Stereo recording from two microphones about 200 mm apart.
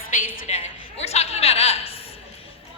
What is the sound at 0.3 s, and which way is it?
A woman's voice, 35° left (ahead or behind).